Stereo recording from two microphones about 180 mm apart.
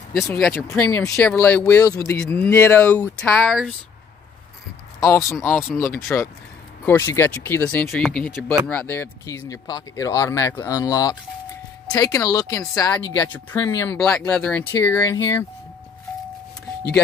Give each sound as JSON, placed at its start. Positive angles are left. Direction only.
{"t": 0.4, "sound": "speech", "side_deg": 5}
{"t": 5.0, "sound": "speech", "side_deg": 15}
{"t": 13.9, "sound": "speech", "side_deg": 0}